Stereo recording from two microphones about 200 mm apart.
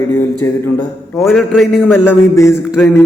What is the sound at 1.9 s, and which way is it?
Speech, 10° left (ahead or behind).